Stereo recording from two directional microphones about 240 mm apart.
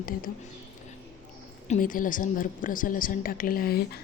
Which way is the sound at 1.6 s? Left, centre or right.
Left.